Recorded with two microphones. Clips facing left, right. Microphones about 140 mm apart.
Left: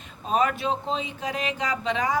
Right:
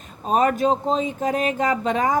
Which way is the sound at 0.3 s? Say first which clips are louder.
Right 5 dB; 45° right (ahead or behind).